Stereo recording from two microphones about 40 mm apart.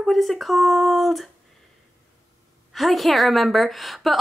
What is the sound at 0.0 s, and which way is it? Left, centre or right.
A woman's voice, centre.